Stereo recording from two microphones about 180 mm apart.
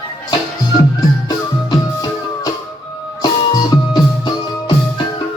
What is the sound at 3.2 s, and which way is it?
Music, 20° left (ahead or behind).